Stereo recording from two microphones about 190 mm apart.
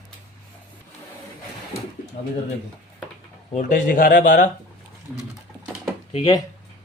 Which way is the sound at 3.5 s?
40° left (ahead or behind).